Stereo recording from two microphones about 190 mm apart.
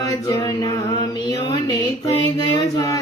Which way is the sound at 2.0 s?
20° left (ahead or behind).